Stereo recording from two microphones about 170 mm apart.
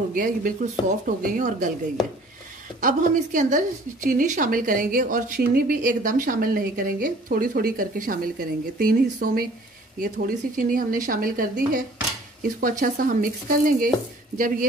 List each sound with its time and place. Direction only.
0.1 s speech: 55° right (ahead or behind)
2.8 s a woman's voice: 50° right (ahead or behind)